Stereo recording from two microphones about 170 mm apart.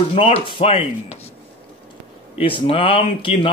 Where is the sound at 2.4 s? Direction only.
30° left (ahead or behind).